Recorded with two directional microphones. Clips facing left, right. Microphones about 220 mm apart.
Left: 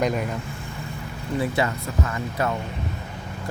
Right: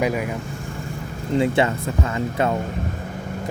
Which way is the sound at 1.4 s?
25° right (ahead or behind).